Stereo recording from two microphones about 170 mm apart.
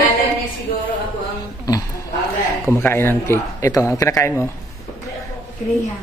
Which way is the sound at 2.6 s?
10° left (ahead or behind).